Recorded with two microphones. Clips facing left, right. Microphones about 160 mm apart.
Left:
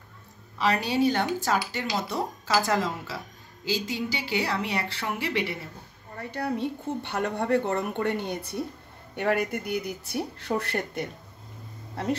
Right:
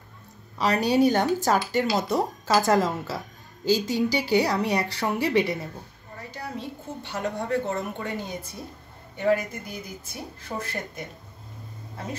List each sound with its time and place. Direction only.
0.6 s speech: 40° right (ahead or behind)
6.3 s a woman's voice: 60° left (ahead or behind)